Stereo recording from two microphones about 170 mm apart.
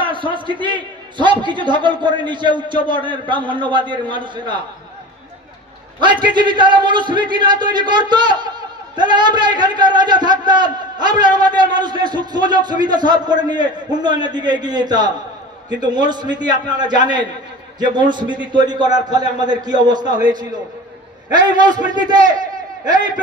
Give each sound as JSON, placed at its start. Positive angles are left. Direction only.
{"t": 0.0, "sound": "a man's voice", "side_deg": -30}
{"t": 5.9, "sound": "a man's voice", "side_deg": -25}
{"t": 21.5, "sound": "a man's voice", "side_deg": -25}